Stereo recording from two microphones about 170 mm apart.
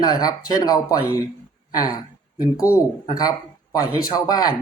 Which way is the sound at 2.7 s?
25° left (ahead or behind).